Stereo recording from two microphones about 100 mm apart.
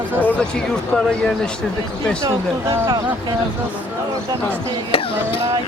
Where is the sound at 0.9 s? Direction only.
5° left (ahead or behind).